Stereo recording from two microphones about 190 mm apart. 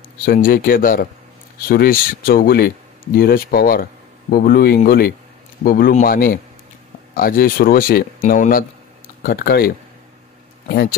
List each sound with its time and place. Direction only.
0.2 s speech: 50° left (ahead or behind)